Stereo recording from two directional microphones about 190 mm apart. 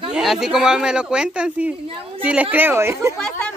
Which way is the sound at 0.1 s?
Centre (ahead or behind).